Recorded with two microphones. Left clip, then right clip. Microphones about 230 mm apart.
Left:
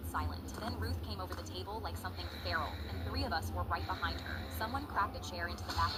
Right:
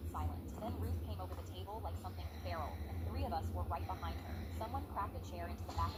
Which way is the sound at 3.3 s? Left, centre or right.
Left.